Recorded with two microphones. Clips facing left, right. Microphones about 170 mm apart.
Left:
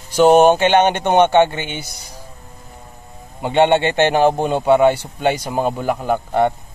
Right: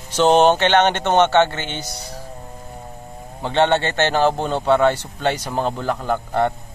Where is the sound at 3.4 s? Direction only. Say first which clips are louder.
Left 3 dB; 15° left (ahead or behind).